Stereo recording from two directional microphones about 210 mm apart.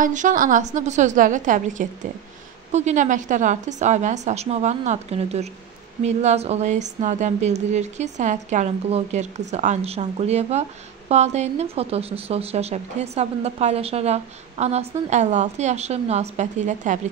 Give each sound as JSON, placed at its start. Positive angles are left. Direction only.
{"t": 0.0, "sound": "speech", "side_deg": -35}